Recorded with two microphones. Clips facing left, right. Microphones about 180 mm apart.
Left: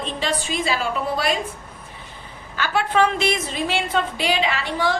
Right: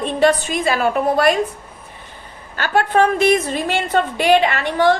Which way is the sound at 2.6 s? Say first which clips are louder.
Right 4 dB; 50° right (ahead or behind).